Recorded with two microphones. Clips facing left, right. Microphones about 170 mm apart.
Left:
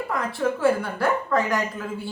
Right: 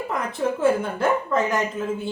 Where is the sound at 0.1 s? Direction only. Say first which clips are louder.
Even; 20° right (ahead or behind).